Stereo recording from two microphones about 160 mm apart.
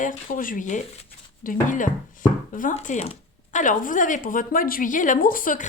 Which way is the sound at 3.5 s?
55° left (ahead or behind).